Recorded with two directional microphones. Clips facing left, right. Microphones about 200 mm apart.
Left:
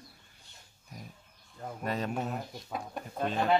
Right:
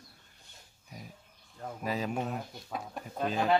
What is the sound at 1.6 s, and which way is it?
Speech, centre (ahead or behind).